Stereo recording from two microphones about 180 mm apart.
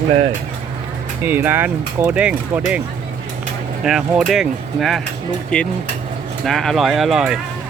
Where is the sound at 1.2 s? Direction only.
10° right (ahead or behind).